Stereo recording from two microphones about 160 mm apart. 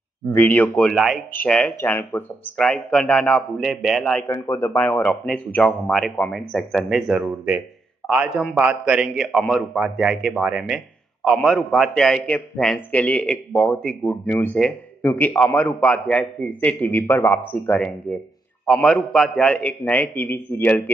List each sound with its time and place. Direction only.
0.3 s a man's voice: 10° left (ahead or behind)
4.3 s a man's voice: 20° left (ahead or behind)